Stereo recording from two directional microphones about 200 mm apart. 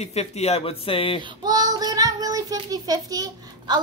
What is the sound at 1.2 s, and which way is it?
Child singing, 20° right (ahead or behind).